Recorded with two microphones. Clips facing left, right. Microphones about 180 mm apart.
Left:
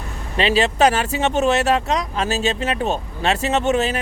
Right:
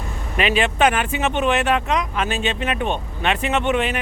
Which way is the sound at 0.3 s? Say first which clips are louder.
Left 2 dB; 35° left (ahead or behind).